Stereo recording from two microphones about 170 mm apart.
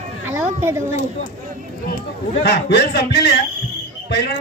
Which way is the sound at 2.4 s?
75° left (ahead or behind).